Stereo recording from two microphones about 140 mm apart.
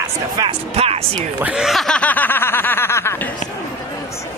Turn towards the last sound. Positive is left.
turn(degrees=20)  # may be behind; listen again after turning